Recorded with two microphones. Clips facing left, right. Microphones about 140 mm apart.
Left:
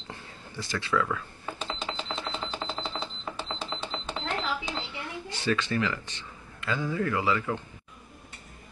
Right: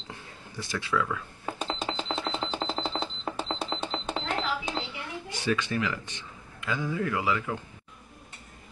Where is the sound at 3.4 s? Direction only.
35° right (ahead or behind).